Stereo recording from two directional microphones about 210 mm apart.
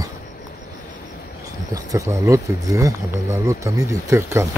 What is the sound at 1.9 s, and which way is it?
Speech, 15° right (ahead or behind).